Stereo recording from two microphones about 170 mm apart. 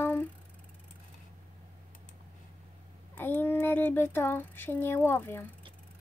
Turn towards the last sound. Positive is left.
turn(degrees=15)  # may be behind; listen again after turning